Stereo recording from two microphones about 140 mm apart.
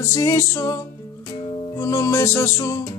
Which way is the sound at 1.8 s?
25° left (ahead or behind).